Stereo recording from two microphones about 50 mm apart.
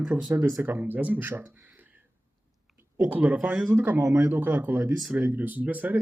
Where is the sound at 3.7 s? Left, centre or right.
Right.